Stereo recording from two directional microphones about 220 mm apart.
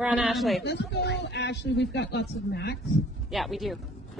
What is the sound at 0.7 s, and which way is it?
Speech, 50° left (ahead or behind).